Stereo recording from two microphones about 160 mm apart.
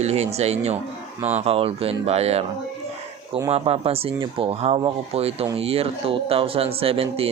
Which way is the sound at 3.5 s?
35° right (ahead or behind).